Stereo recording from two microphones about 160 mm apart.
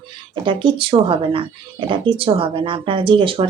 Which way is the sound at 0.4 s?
30° right (ahead or behind).